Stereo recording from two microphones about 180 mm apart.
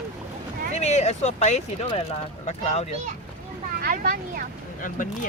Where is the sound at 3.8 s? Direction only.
55° right (ahead or behind).